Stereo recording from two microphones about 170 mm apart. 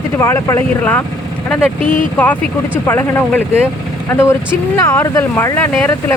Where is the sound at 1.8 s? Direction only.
50° left (ahead or behind).